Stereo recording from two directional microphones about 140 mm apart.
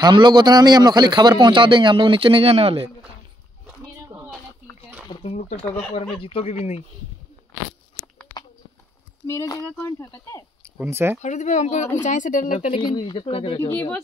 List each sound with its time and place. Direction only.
0.0 s a man's voice: 30° right (ahead or behind)
5.2 s speech: 55° left (ahead or behind)
9.2 s speech: 25° left (ahead or behind)
10.8 s speech: 20° right (ahead or behind)
11.1 s speech: 60° left (ahead or behind)
12.5 s speech: 45° left (ahead or behind)
12.8 s speech: 30° left (ahead or behind)
13.6 s speech: 15° left (ahead or behind)